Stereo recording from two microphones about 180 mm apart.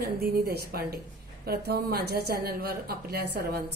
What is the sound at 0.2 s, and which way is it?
A woman's voice, 60° right (ahead or behind).